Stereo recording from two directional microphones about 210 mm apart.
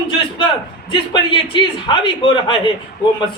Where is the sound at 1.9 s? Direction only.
25° left (ahead or behind).